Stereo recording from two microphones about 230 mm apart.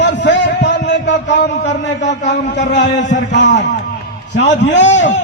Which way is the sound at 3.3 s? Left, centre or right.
Left.